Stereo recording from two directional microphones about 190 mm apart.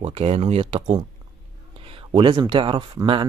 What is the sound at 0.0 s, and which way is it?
Speech, 30° right (ahead or behind).